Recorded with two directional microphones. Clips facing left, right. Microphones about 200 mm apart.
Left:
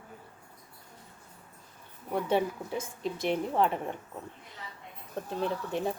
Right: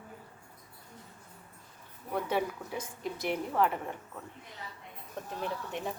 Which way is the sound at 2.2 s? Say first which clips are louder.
Left 5 dB; 25° left (ahead or behind).